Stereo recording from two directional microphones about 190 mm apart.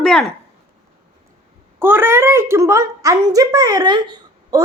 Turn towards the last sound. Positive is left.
turn(degrees=-20)  # may be behind; listen again after turning